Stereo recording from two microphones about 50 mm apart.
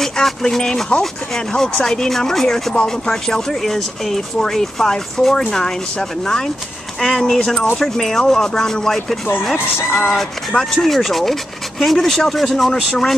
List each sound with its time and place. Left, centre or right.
0.0 s speech: centre
2.7 s speech: left
3.3 s speech: centre